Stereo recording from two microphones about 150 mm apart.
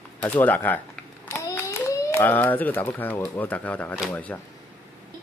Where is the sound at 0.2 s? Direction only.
10° left (ahead or behind).